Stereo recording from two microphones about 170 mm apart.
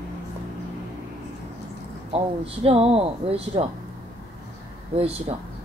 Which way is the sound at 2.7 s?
35° right (ahead or behind).